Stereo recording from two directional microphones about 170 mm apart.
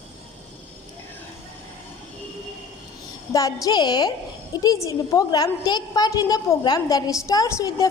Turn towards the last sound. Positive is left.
turn(degrees=20)  # may be behind; listen again after turning